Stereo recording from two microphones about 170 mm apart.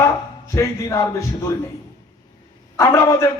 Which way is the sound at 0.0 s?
15° left (ahead or behind).